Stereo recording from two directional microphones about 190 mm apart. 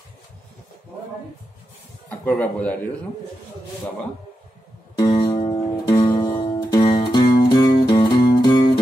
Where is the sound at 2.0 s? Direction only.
10° left (ahead or behind).